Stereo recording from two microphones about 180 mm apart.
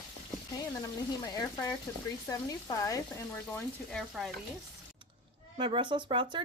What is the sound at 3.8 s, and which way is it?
Stir, centre (ahead or behind).